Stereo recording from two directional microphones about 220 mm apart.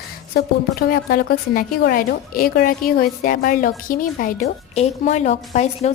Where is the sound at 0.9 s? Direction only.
45° left (ahead or behind).